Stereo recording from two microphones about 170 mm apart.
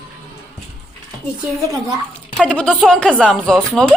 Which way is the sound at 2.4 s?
5° left (ahead or behind).